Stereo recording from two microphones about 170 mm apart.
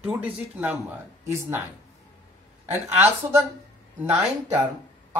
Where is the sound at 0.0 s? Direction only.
10° right (ahead or behind).